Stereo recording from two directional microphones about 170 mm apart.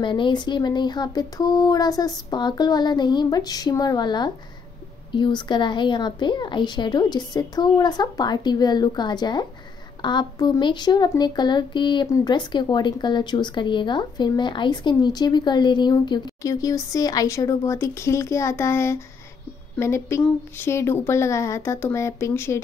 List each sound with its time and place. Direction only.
0.0 s speech: 30° left (ahead or behind)